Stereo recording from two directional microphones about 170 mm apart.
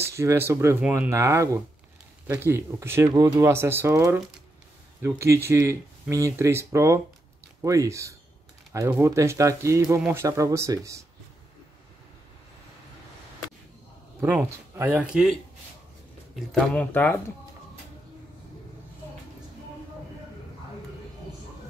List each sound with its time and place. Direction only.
0.0 s speech: 15° right (ahead or behind)
14.2 s speech: 15° right (ahead or behind)
16.3 s speech: centre (ahead or behind)
16.9 s speech: 10° left (ahead or behind)